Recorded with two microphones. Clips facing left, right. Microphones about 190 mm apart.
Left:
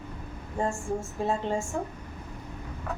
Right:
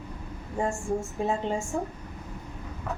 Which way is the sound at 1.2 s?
15° right (ahead or behind).